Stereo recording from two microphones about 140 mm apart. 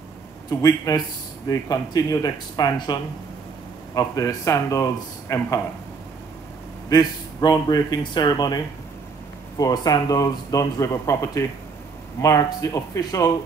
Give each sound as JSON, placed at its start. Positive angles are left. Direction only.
{"t": 0.5, "sound": "speech", "side_deg": 25}
{"t": 6.9, "sound": "speech", "side_deg": 25}
{"t": 9.6, "sound": "speech", "side_deg": 25}